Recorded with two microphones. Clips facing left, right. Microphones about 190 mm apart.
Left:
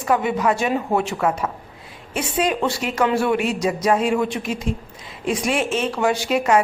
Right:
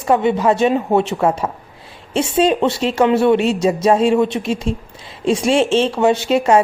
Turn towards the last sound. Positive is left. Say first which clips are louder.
# right 4 dB
turn(degrees=-25)  # may be behind; listen again after turning